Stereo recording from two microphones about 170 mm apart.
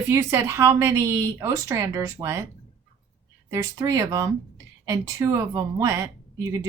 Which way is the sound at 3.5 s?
20° right (ahead or behind).